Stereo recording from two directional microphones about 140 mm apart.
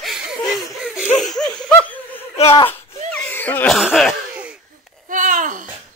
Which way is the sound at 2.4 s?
45° left (ahead or behind).